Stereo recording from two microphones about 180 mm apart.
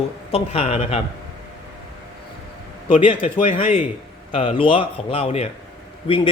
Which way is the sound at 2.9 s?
30° left (ahead or behind).